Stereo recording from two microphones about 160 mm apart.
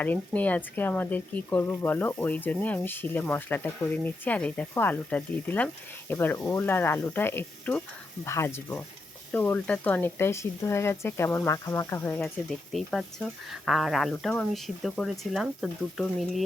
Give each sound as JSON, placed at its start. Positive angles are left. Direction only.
{"t": 0.0, "sound": "speech", "side_deg": 10}